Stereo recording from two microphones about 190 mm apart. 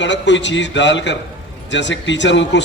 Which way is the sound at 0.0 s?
70° left (ahead or behind).